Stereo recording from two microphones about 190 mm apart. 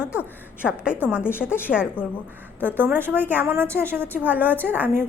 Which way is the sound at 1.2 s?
10° left (ahead or behind).